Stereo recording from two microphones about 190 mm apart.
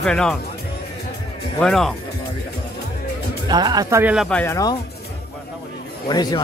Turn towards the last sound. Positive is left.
turn(degrees=20)  # may be behind; listen again after turning